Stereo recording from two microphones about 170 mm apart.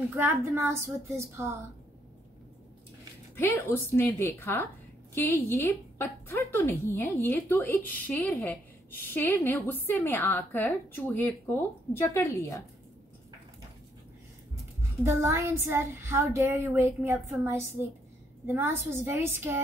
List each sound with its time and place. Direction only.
0.1 s speech: 15° right (ahead or behind)
3.3 s a woman's voice: 15° left (ahead or behind)
14.8 s speech: 15° right (ahead or behind)